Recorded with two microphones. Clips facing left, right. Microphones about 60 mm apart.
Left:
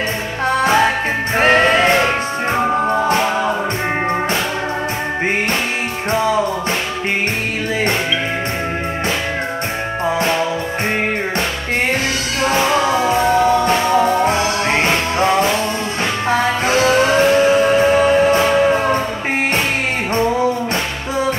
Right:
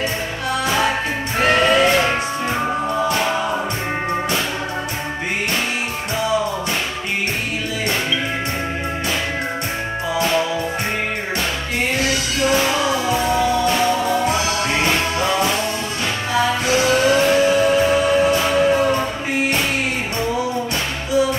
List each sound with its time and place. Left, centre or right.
0.5 s music: left
12.4 s music: left
21.1 s music: left